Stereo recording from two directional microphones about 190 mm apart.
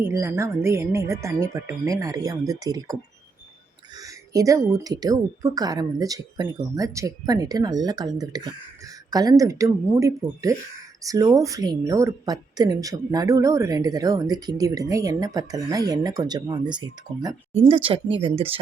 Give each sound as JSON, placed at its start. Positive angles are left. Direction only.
{"t": 0.0, "sound": "a woman's voice", "side_deg": -15}